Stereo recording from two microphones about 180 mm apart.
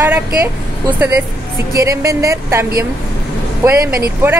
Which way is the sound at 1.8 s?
15° right (ahead or behind).